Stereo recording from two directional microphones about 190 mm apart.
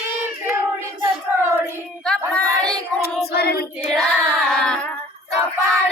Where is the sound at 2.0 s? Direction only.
5° left (ahead or behind).